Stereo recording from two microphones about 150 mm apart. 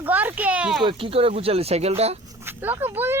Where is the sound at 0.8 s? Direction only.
40° right (ahead or behind).